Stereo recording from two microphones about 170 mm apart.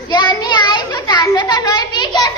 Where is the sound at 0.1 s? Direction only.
25° left (ahead or behind).